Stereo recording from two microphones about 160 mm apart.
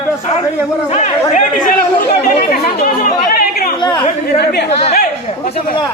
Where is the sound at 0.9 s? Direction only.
45° left (ahead or behind).